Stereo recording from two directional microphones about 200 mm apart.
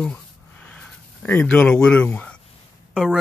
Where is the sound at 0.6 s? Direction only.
5° left (ahead or behind).